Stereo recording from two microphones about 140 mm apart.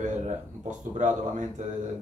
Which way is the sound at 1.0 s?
60° right (ahead or behind).